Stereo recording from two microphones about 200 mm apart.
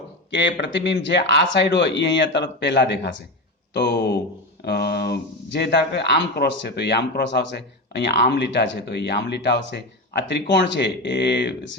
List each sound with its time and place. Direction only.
0.7 s speech: 60° left (ahead or behind)